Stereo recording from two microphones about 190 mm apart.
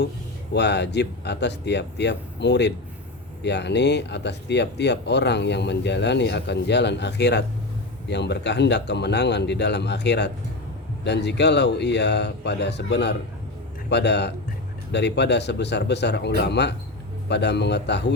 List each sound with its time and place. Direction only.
0.5 s speech: 65° left (ahead or behind)